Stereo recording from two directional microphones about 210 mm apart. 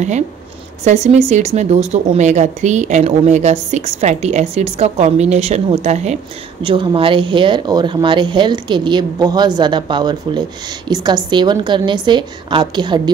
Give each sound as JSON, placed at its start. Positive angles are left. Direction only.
{"t": 0.8, "sound": "speech", "side_deg": -30}